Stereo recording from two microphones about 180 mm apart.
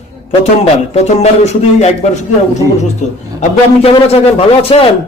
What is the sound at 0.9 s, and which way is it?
A man's voice, 40° left (ahead or behind).